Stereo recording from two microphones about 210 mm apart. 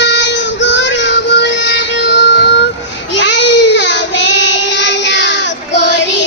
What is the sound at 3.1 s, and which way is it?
Child singing, 60° left (ahead or behind).